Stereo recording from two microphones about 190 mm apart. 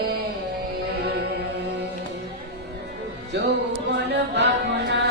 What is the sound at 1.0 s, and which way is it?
Music, 60° right (ahead or behind).